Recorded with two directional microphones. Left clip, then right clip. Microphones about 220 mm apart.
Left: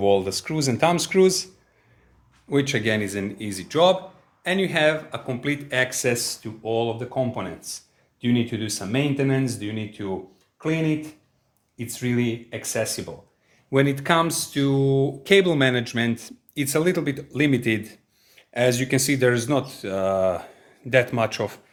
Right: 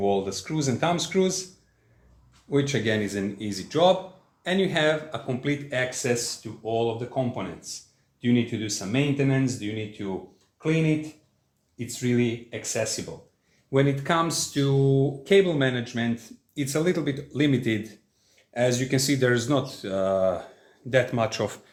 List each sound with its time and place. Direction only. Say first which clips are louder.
0.0 s speech: left 5 dB; 45° left (ahead or behind)
2.5 s speech: left 2 dB; 40° left (ahead or behind)